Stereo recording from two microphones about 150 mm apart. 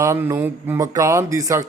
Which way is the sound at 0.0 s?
20° right (ahead or behind).